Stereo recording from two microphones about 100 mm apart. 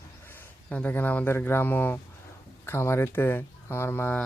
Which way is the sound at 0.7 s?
15° left (ahead or behind).